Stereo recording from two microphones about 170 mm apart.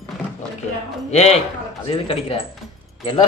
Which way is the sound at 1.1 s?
40° left (ahead or behind).